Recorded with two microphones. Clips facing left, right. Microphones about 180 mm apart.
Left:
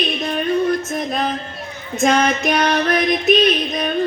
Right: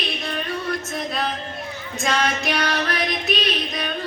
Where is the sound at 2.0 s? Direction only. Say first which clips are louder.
Left 7 dB; 45° left (ahead or behind).